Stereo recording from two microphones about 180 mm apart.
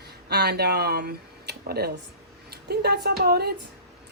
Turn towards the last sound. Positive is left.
turn(degrees=-60)  # may be behind; listen again after turning